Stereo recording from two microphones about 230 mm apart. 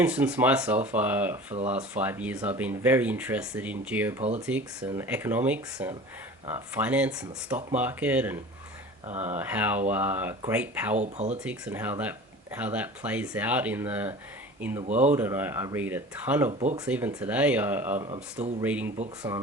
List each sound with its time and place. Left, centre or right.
0.0 s speech: centre
10.9 s speech: right
11.3 s speech: centre
14.8 s speech: right
15.1 s speech: centre
16.5 s speech: right
16.8 s speech: centre
18.0 s speech: right
18.6 s speech: centre